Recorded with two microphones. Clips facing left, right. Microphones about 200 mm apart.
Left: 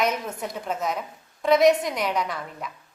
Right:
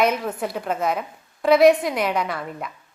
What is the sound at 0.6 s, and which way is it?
Speech, 60° right (ahead or behind).